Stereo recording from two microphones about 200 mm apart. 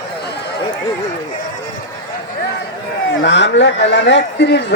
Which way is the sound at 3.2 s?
60° left (ahead or behind).